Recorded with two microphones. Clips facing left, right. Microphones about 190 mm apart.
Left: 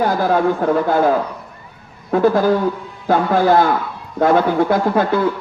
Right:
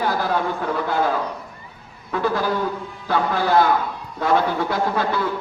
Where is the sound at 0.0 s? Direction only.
50° left (ahead or behind).